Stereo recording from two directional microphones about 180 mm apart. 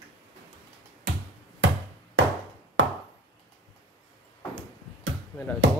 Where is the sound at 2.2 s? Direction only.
90° right.